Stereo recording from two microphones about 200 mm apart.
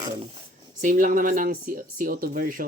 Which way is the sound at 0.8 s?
40° right (ahead or behind).